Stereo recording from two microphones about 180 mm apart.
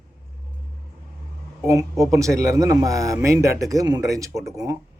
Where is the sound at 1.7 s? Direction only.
20° right (ahead or behind).